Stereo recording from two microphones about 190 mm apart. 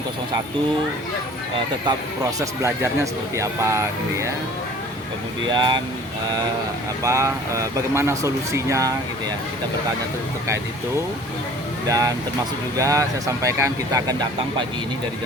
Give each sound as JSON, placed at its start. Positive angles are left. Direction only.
{"t": 2.4, "sound": "speech", "side_deg": -15}
{"t": 5.5, "sound": "speech", "side_deg": -25}
{"t": 7.0, "sound": "speech", "side_deg": -15}
{"t": 11.9, "sound": "speech", "side_deg": -20}